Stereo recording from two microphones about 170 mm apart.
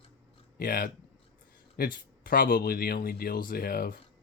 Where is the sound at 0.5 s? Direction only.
55° left (ahead or behind).